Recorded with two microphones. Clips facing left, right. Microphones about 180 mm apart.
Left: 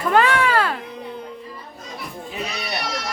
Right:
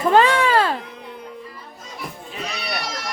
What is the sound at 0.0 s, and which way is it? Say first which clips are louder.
Music: right 2 dB; 25° right (ahead or behind).